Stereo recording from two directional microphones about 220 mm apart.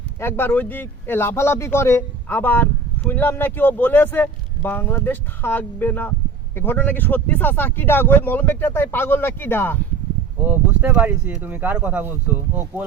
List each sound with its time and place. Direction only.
0.2 s speech: 10° left (ahead or behind)
10.8 s speech: 10° right (ahead or behind)